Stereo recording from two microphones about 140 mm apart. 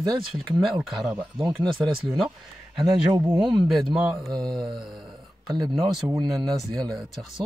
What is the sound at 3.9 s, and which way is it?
Speech, 5° right (ahead or behind).